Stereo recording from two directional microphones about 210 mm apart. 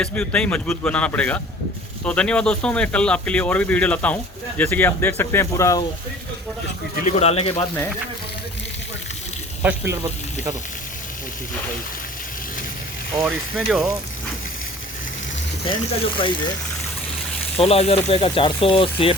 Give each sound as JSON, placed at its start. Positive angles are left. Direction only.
{"t": 0.0, "sound": "a man's voice", "side_deg": 5}
{"t": 7.0, "sound": "speech", "side_deg": 30}
{"t": 13.2, "sound": "a man's voice", "side_deg": 0}
{"t": 15.7, "sound": "speech", "side_deg": 25}
{"t": 17.6, "sound": "speech", "side_deg": 30}